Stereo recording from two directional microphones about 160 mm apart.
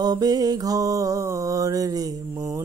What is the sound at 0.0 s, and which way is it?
Mantra, 25° right (ahead or behind).